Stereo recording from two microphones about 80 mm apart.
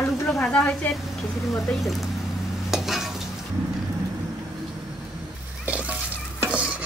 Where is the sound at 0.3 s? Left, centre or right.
Centre.